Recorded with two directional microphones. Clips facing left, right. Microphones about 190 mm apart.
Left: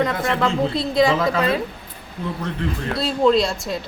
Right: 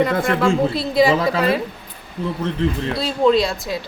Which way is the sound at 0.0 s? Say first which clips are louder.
Right 3 dB; 5° right (ahead or behind).